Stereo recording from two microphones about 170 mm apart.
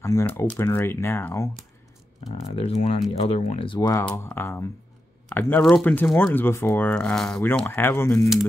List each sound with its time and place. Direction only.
0.0 s speech: 20° left (ahead or behind)
2.5 s speech: 35° left (ahead or behind)
4.0 s speech: 10° left (ahead or behind)
7.4 s speech: 15° left (ahead or behind)